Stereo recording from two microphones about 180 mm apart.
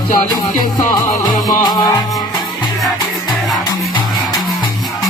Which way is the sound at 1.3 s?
20° left (ahead or behind).